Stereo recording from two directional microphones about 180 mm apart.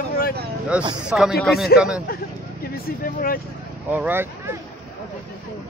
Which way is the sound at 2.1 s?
55° left (ahead or behind).